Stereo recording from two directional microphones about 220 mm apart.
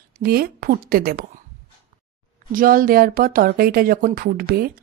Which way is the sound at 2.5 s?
40° right (ahead or behind).